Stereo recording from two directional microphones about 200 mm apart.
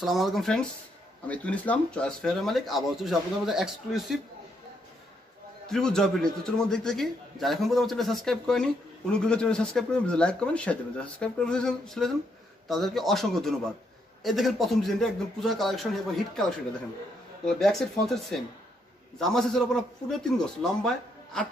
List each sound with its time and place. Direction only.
0.0 s a man's voice: centre (ahead or behind)
5.7 s a man's voice: 5° left (ahead or behind)